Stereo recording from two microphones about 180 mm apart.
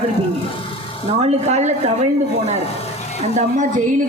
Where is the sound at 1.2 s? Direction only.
40° right (ahead or behind).